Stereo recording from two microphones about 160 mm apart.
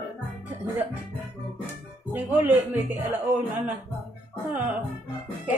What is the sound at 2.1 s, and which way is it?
Speech, 10° right (ahead or behind).